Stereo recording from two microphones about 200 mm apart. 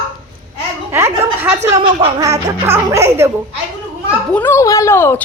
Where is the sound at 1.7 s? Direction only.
25° right (ahead or behind).